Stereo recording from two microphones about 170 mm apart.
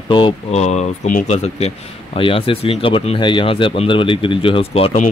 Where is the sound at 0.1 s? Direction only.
35° left (ahead or behind).